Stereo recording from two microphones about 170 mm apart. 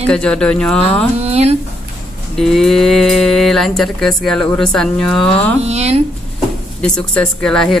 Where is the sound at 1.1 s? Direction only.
35° right (ahead or behind).